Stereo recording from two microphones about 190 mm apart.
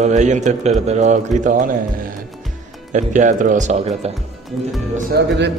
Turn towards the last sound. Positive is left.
turn(degrees=-55)  # may be behind; listen again after turning